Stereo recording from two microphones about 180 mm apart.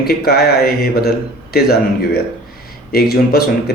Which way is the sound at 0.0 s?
60° left (ahead or behind).